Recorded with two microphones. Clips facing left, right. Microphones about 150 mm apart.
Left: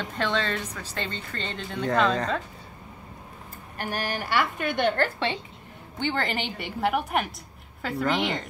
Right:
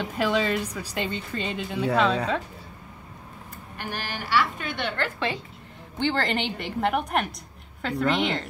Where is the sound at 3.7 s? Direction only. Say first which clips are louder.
Left 4 dB; 50° left (ahead or behind).